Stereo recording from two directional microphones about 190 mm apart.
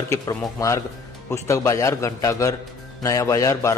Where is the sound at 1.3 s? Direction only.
15° left (ahead or behind).